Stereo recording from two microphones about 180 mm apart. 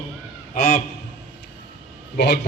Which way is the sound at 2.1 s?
70° left (ahead or behind).